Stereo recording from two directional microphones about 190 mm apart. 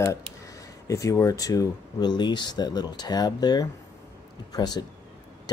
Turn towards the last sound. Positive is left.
turn(degrees=20)  # may be behind; listen again after turning